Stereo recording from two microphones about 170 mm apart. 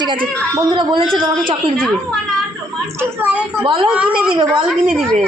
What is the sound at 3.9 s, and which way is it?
Speech, 5° right (ahead or behind).